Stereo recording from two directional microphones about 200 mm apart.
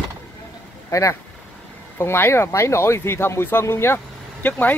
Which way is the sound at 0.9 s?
15° left (ahead or behind).